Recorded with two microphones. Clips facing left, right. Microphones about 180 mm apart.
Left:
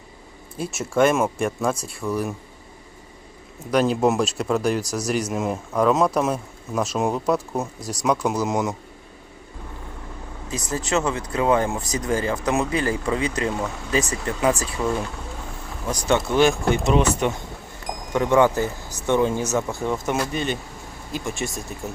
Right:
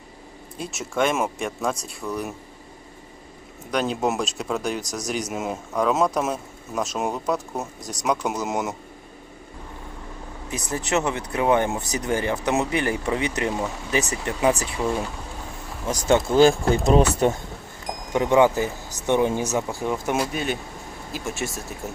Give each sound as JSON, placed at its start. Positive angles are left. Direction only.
{"t": 0.6, "sound": "speech", "side_deg": 0}
{"t": 3.7, "sound": "speech", "side_deg": 5}
{"t": 10.7, "sound": "speech", "side_deg": -20}
{"t": 15.9, "sound": "speech", "side_deg": -25}
{"t": 18.1, "sound": "speech", "side_deg": -20}